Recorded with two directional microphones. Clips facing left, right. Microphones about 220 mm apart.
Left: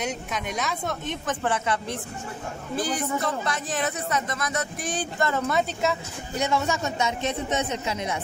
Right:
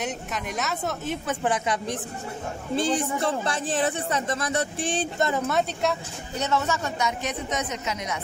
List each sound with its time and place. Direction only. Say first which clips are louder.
0.0 s speech: left 1 dB; centre (ahead or behind)
2.7 s a man's voice: right 2 dB; 25° right (ahead or behind)
5.5 s speech: even; centre (ahead or behind); by 8.2 s 30° left (ahead or behind)